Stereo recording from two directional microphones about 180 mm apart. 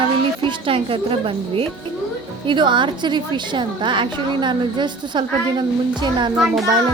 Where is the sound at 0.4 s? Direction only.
30° right (ahead or behind).